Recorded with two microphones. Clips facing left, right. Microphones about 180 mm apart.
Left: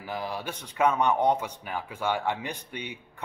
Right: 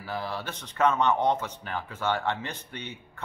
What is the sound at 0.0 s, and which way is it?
A man's voice, 15° left (ahead or behind).